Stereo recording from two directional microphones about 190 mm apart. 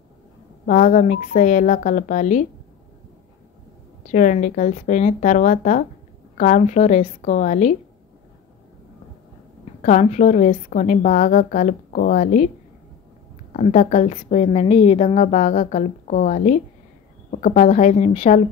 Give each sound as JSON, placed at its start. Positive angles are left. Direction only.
{"t": 0.7, "sound": "a woman's voice", "side_deg": 40}
{"t": 4.1, "sound": "a woman's voice", "side_deg": 40}
{"t": 9.8, "sound": "a woman's voice", "side_deg": 40}
{"t": 13.5, "sound": "a woman's voice", "side_deg": 40}